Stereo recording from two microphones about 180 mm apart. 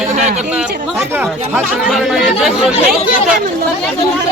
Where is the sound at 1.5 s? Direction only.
5° right (ahead or behind).